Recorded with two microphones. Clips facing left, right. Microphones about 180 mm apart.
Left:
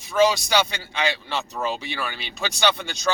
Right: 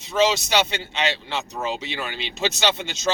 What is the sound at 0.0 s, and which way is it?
Speech, 20° right (ahead or behind).